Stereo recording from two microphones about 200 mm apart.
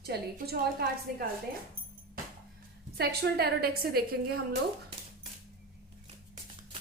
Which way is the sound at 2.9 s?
50° right (ahead or behind).